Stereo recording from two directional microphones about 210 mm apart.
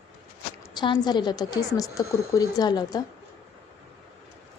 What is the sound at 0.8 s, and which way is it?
A woman's voice, 20° left (ahead or behind).